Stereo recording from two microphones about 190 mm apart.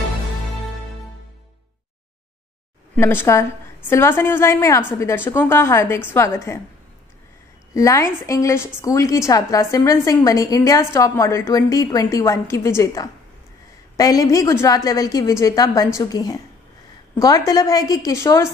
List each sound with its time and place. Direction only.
3.0 s a woman's voice: 10° left (ahead or behind)
7.7 s a woman's voice: 15° left (ahead or behind)